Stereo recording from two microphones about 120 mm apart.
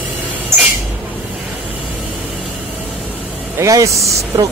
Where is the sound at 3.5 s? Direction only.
25° right (ahead or behind).